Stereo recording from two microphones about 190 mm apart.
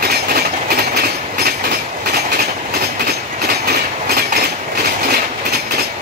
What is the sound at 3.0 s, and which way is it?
Train, 55° right (ahead or behind).